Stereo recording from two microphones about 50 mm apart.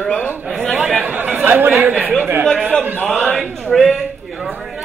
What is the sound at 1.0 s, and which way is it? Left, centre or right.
Chatter, right.